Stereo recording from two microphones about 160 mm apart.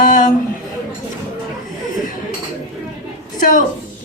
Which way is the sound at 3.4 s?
55° left (ahead or behind).